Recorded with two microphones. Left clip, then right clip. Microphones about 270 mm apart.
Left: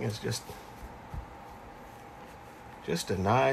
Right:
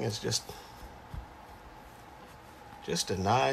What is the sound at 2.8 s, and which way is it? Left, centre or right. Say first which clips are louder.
Speech: even; centre.